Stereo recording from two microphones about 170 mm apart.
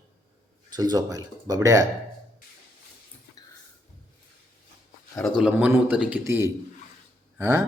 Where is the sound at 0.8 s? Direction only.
20° right (ahead or behind).